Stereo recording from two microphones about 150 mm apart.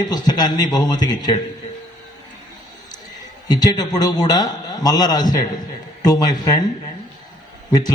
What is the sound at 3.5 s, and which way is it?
A man's voice, 25° left (ahead or behind).